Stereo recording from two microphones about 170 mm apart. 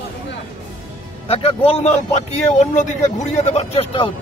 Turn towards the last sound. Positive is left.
turn(degrees=35)  # may be behind; listen again after turning